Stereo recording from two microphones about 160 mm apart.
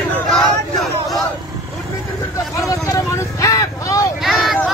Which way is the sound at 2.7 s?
20° left (ahead or behind).